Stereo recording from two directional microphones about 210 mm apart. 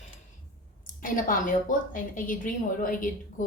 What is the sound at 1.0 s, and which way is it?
A woman's voice, 40° left (ahead or behind).